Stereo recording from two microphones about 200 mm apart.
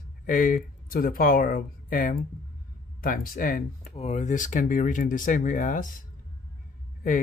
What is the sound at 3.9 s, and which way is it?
Speech, 35° left (ahead or behind).